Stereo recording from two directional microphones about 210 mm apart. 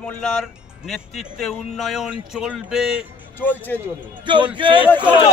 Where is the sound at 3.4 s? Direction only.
10° left (ahead or behind).